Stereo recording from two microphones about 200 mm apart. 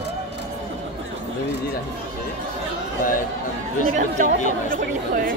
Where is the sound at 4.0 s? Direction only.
40° right (ahead or behind).